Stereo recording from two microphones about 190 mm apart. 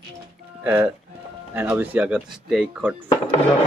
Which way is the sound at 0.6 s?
10° right (ahead or behind).